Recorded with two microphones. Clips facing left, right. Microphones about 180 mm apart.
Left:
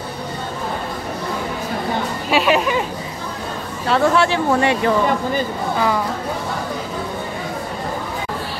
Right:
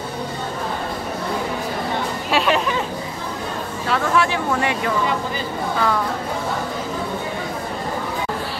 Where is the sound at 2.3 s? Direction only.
5° left (ahead or behind).